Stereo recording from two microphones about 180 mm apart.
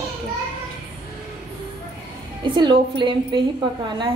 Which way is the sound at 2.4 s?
25° right (ahead or behind).